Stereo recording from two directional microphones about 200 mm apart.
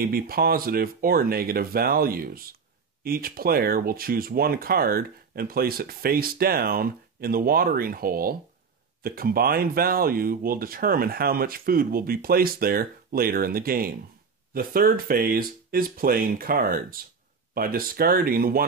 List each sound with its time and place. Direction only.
0.0 s speech: 50° right (ahead or behind)